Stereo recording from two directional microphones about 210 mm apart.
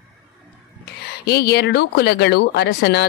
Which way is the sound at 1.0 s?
50° left (ahead or behind).